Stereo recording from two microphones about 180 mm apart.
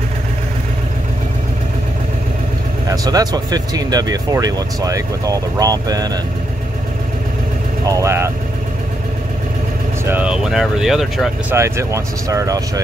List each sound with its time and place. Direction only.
2.9 s speech: 20° right (ahead or behind)
7.8 s speech: 15° right (ahead or behind)
10.0 s speech: 5° right (ahead or behind)
11.5 s speech: 15° right (ahead or behind)